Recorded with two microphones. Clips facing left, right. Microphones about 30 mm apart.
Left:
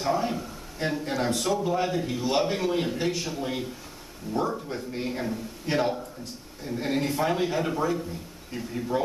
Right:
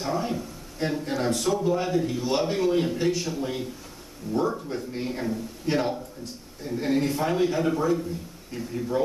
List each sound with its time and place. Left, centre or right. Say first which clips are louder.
0.0 s a man's voice: left 1 dB; centre